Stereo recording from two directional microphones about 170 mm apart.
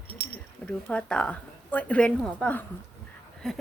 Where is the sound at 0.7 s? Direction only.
5° left (ahead or behind).